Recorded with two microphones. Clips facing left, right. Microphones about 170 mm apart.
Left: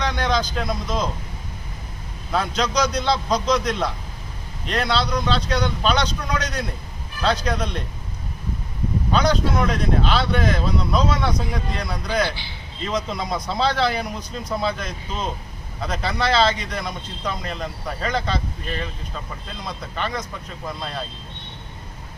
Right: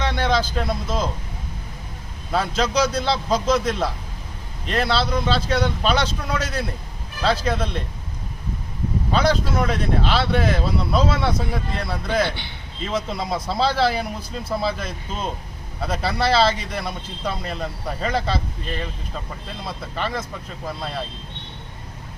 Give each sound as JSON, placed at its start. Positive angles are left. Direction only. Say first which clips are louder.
{"t": 0.0, "sound": "speech", "louder": "right 1 dB", "side_deg": -5}
{"t": 2.3, "sound": "speech", "louder": "right 1 dB", "side_deg": -5}
{"t": 9.1, "sound": "speech", "louder": "even", "side_deg": -5}
{"t": 12.3, "sound": "a man's voice", "louder": "right 1 dB", "side_deg": -60}
{"t": 12.9, "sound": "speech", "louder": "even", "side_deg": -5}
{"t": 19.6, "sound": "speech", "louder": "right 1 dB", "side_deg": -5}